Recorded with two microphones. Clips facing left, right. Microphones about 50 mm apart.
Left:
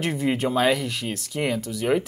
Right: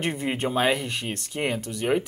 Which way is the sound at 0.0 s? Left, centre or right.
Centre.